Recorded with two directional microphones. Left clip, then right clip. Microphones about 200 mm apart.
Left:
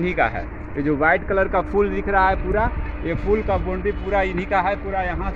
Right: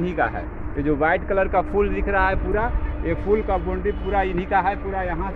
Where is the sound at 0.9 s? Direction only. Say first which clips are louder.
Left 2 dB; 50° left (ahead or behind).